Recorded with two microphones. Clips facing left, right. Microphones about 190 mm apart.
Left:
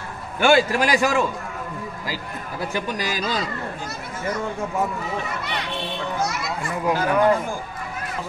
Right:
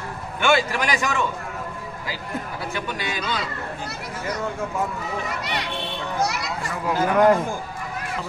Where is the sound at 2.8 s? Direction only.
40° left (ahead or behind).